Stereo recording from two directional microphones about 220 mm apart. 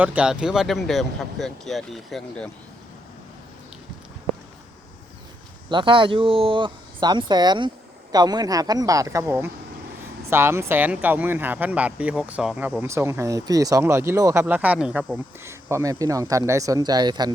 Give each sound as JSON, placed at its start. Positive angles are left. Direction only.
{"t": 0.0, "sound": "speech", "side_deg": -5}
{"t": 5.6, "sound": "speech", "side_deg": -20}